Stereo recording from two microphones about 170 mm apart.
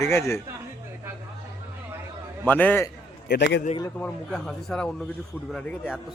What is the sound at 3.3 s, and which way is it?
Speech, 80° left.